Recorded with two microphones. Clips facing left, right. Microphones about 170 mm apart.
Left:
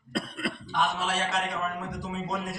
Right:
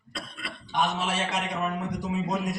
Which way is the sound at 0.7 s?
20° right (ahead or behind).